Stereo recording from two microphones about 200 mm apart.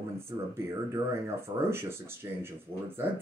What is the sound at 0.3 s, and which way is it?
Speech, 20° right (ahead or behind).